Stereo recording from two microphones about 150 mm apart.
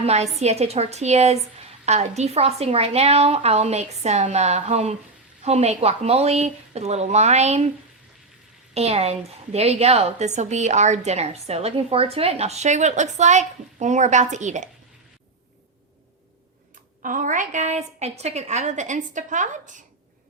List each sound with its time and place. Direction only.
0.0 s a woman's voice: 45° right (ahead or behind)
8.7 s a woman's voice: 45° right (ahead or behind)
17.0 s a woman's voice: 65° right (ahead or behind)